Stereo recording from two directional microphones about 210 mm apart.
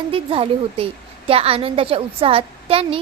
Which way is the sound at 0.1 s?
25° right (ahead or behind).